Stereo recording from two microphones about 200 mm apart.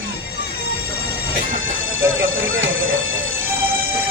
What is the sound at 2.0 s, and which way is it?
Speech, 90° right.